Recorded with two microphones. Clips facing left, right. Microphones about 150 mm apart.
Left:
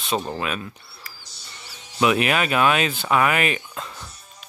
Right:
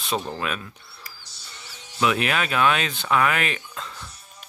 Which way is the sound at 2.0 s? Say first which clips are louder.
Left 3 dB; 10° left (ahead or behind).